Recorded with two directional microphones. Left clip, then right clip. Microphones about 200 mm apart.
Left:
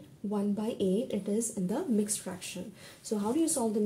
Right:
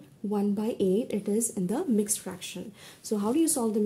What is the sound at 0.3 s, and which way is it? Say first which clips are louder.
A woman's voice: right 4 dB; 40° right (ahead or behind).